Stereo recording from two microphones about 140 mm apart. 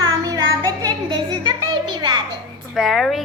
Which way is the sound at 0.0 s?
30° right (ahead or behind).